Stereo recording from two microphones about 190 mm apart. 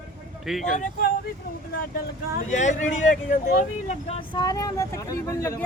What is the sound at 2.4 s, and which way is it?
Speech, 40° left (ahead or behind).